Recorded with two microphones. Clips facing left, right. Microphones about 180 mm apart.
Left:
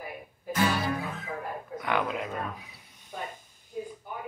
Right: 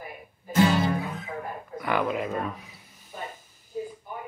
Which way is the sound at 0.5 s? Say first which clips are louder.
Right 5 dB; 25° right (ahead or behind).